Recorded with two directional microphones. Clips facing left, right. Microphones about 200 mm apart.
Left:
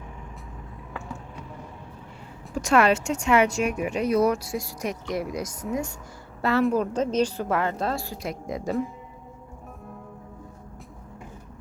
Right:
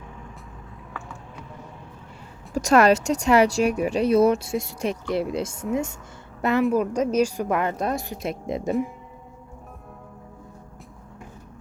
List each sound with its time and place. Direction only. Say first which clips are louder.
2.6 s a woman's voice: right 3 dB; 40° right (ahead or behind); by 8.7 s 25° right (ahead or behind)